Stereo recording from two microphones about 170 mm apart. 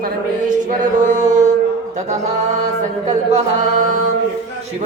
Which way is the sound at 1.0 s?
45° right (ahead or behind).